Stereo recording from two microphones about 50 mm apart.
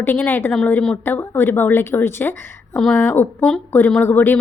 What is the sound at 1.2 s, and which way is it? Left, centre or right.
A woman's voice, left.